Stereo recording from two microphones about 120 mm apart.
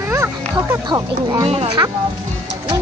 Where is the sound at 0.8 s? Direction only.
35° right (ahead or behind).